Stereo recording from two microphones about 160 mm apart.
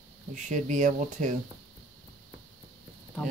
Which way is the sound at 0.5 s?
50° right (ahead or behind).